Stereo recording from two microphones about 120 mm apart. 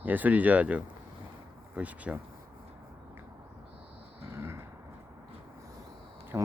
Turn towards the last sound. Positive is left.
turn(degrees=-25)  # may be behind; listen again after turning